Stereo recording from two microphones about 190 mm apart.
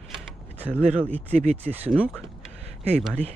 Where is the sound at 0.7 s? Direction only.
35° right (ahead or behind).